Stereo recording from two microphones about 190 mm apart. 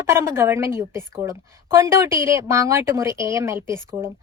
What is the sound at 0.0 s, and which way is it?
A woman's voice, 15° right (ahead or behind).